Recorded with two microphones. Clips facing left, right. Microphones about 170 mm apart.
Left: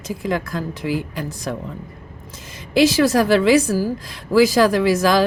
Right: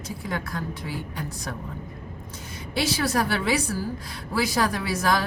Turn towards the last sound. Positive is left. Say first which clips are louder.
# left 9 dB
turn(degrees=90)